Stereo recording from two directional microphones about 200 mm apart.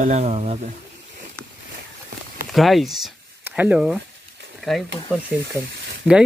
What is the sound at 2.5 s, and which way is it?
Speech, centre (ahead or behind).